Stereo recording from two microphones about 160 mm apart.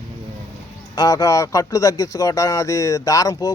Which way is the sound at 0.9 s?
25° left (ahead or behind).